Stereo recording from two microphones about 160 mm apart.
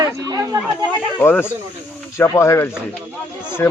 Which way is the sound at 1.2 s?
15° left (ahead or behind).